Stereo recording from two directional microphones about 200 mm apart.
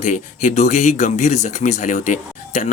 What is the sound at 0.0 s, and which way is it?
Speech, 35° left (ahead or behind).